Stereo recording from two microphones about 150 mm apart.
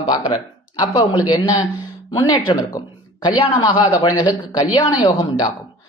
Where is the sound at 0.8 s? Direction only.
25° left (ahead or behind).